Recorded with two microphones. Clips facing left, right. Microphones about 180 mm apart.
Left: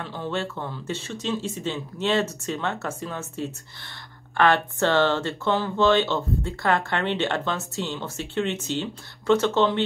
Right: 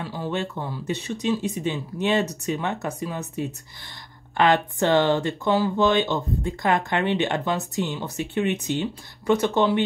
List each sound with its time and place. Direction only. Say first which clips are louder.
0.0 s speech: right 1 dB; 10° right (ahead or behind)